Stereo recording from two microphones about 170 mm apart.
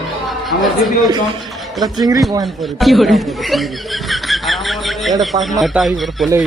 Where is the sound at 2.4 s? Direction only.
Centre (ahead or behind).